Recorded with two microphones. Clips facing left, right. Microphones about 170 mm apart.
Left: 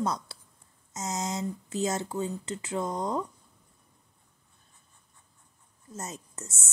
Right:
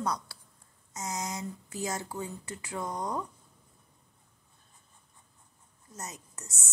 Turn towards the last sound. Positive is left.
turn(degrees=25)  # may be behind; listen again after turning